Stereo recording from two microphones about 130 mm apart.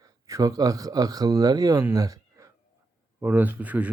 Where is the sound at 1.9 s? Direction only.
25° right (ahead or behind).